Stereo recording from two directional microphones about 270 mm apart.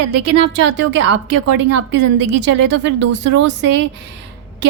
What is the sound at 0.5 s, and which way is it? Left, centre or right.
A woman's voice, right.